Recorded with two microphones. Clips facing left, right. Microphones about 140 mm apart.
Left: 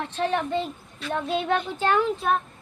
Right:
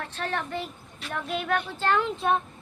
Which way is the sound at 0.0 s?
20° left (ahead or behind).